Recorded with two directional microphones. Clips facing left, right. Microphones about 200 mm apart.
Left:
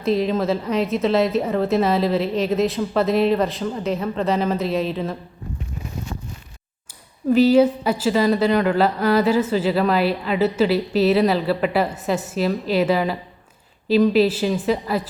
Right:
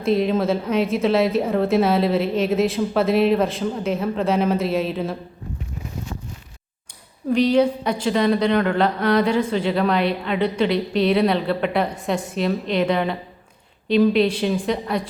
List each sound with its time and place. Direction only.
0.0 s a woman's voice: centre (ahead or behind)
7.3 s a woman's voice: 5° left (ahead or behind)